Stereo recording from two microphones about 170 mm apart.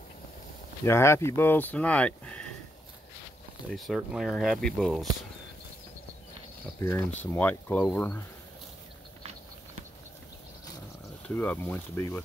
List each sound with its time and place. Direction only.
0.8 s speech: 15° left (ahead or behind)
3.7 s speech: centre (ahead or behind)
6.8 s speech: 15° left (ahead or behind)
11.2 s speech: 10° left (ahead or behind)